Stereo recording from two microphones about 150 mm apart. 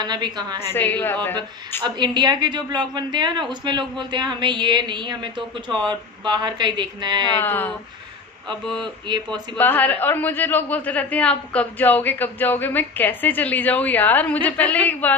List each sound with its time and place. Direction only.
0.0 s a woman's voice: 30° right (ahead or behind)
0.6 s a man's voice: 10° left (ahead or behind)
1.8 s a woman's voice: 25° right (ahead or behind)
7.3 s a man's voice: 15° left (ahead or behind)
8.8 s speech: 30° right (ahead or behind)
9.6 s a man's voice: 10° left (ahead or behind)